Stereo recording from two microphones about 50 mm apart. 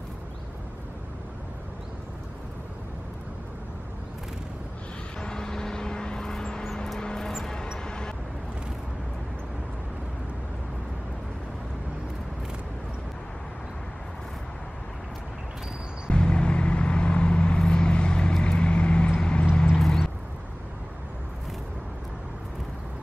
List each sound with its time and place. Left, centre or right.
5.2 s vehicle: centre
16.1 s vehicle: centre
19.8 s a sound: centre